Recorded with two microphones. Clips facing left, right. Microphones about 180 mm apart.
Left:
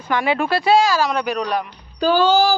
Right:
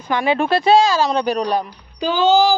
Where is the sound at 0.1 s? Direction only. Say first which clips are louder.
Right 2 dB; 20° right (ahead or behind).